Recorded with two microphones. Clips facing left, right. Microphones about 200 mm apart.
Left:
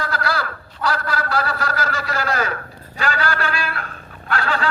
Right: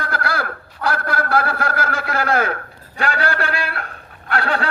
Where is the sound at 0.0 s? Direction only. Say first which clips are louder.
Even; 55° right (ahead or behind).